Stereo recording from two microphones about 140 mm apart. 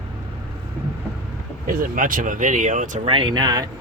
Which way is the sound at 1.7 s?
80° right.